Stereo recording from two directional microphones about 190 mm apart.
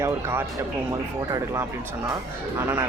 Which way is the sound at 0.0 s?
10° right (ahead or behind).